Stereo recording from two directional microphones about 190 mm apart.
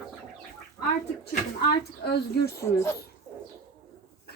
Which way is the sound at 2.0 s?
60° left (ahead or behind).